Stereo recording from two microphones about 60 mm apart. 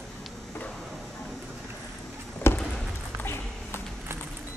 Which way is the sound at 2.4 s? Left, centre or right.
Left.